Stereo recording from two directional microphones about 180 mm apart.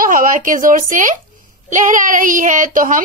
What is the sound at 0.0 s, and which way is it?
Speech, 50° right (ahead or behind).